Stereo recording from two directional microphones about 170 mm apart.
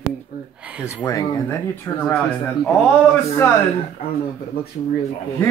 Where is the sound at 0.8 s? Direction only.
5° right (ahead or behind).